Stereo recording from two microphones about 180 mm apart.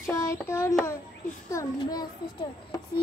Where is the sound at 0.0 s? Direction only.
15° left (ahead or behind).